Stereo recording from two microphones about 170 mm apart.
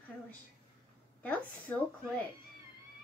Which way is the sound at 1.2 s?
10° left (ahead or behind).